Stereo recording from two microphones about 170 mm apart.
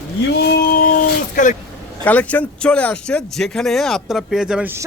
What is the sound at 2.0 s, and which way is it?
Speech, 10° left (ahead or behind).